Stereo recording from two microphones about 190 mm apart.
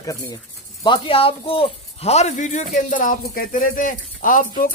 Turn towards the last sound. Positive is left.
turn(degrees=45)  # may be behind; listen again after turning